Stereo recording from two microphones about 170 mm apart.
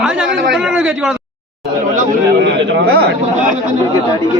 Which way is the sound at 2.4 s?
90° right.